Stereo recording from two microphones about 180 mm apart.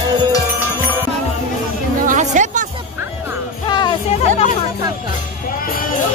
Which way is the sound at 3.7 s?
25° left (ahead or behind).